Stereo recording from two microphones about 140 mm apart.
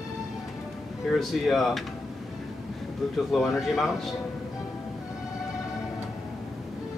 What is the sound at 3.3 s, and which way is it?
Speech, centre (ahead or behind).